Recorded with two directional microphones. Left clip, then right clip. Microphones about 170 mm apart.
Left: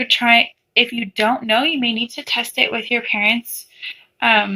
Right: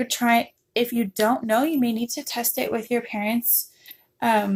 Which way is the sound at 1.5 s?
30° right (ahead or behind).